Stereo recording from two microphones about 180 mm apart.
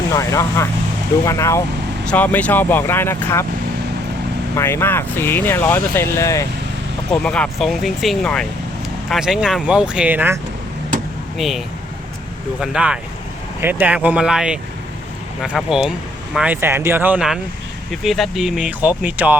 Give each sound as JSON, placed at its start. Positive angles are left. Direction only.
{"t": 0.1, "sound": "speech", "side_deg": 15}
{"t": 4.5, "sound": "speech", "side_deg": 15}
{"t": 11.3, "sound": "speech", "side_deg": 0}